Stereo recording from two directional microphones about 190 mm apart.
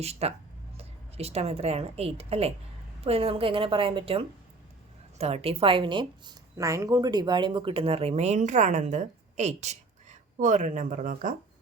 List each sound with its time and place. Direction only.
0.0 s a woman's voice: 35° right (ahead or behind)